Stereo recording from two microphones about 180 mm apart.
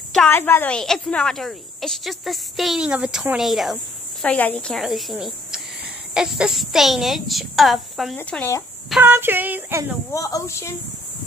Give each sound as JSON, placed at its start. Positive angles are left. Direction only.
{"t": 0.1, "sound": "speech", "side_deg": 5}
{"t": 8.2, "sound": "a woman's voice", "side_deg": 10}
{"t": 9.0, "sound": "speech", "side_deg": -10}
{"t": 10.1, "sound": "a woman's voice", "side_deg": 20}